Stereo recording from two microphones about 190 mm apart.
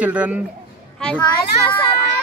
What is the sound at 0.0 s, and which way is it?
Speech, 5° right (ahead or behind).